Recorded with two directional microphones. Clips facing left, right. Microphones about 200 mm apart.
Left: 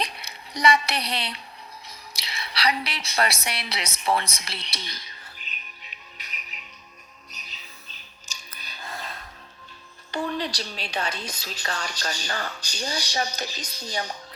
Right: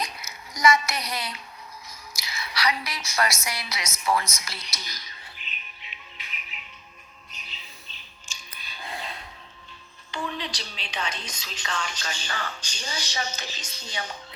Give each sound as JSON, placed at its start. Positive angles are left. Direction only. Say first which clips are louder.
{"t": 0.0, "sound": "a sound", "louder": "left 2 dB", "side_deg": 30}
{"t": 1.9, "sound": "a woman's voice", "louder": "even", "side_deg": 30}
{"t": 5.4, "sound": "music", "louder": "even", "side_deg": 40}
{"t": 7.3, "sound": "bird", "louder": "right 1 dB", "side_deg": 40}
{"t": 8.3, "sound": "music", "louder": "left 1 dB", "side_deg": 40}
{"t": 8.8, "sound": "a sound", "louder": "right 1 dB", "side_deg": -15}
{"t": 10.1, "sound": "speech", "louder": "left 5 dB", "side_deg": 40}